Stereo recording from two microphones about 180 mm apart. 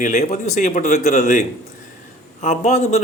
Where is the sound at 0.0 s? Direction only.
40° left (ahead or behind).